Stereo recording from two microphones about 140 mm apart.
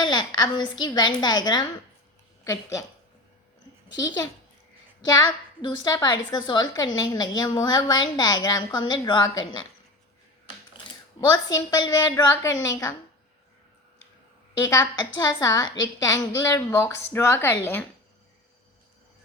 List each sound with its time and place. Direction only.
0.0 s a woman's voice: 30° left (ahead or behind)
3.9 s a woman's voice: 25° left (ahead or behind)
5.6 s a woman's voice: 30° left (ahead or behind)
11.4 s a woman's voice: 25° left (ahead or behind)
14.6 s a woman's voice: 25° left (ahead or behind)